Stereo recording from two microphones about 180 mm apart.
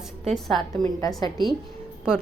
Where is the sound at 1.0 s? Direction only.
20° left (ahead or behind).